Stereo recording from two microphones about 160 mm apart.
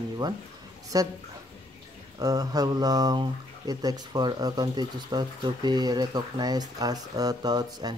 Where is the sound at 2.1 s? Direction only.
20° right (ahead or behind).